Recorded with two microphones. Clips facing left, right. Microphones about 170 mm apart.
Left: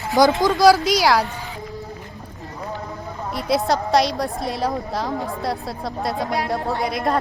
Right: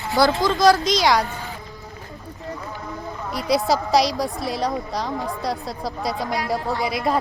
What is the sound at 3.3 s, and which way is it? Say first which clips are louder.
A woman's voice: even; centre (ahead or behind).